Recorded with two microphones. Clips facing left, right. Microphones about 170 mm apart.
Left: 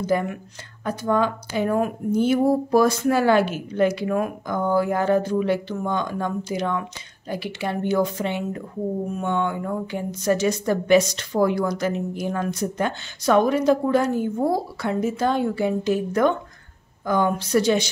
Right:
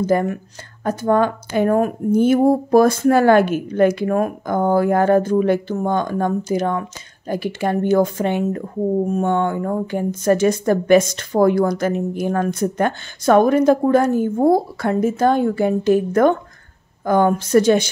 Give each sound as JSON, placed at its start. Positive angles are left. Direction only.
{"t": 0.0, "sound": "speech", "side_deg": -45}